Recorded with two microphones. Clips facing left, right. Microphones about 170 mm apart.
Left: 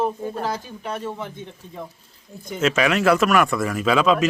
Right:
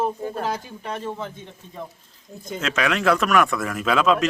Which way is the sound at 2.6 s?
5° left (ahead or behind).